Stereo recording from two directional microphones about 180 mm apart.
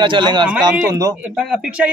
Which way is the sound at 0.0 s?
25° right (ahead or behind).